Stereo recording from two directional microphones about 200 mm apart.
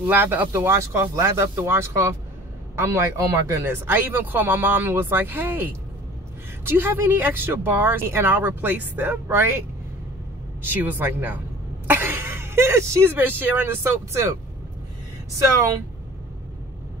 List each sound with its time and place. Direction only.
0.0 s speech: 10° right (ahead or behind)
10.6 s speech: 10° right (ahead or behind)